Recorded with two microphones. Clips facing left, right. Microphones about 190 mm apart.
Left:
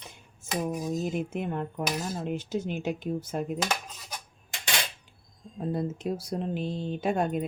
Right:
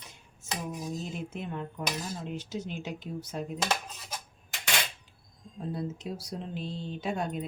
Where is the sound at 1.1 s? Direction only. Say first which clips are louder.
Left 6 dB; 55° left (ahead or behind).